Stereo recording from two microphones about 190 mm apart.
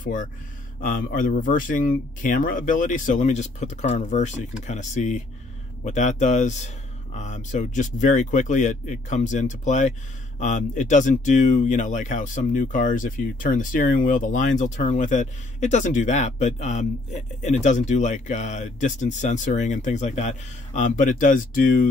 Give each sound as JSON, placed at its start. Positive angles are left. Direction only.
{"t": 0.0, "sound": "speech", "side_deg": 45}